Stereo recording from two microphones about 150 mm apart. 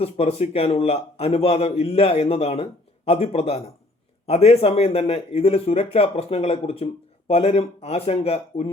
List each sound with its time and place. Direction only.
0.0 s a man's voice: 40° left (ahead or behind)